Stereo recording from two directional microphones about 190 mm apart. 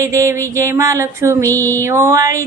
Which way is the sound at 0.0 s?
15° right (ahead or behind).